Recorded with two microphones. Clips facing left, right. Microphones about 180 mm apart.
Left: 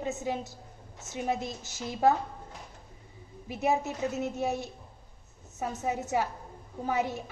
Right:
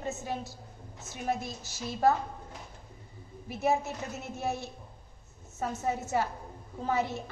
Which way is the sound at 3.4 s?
15° left (ahead or behind).